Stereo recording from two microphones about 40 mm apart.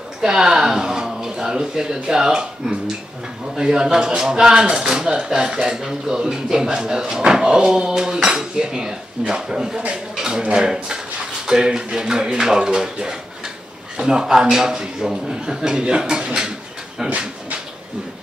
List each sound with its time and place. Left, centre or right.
0.2 s a man's voice: centre
5.8 s a man's voice: centre
17.0 s speech: centre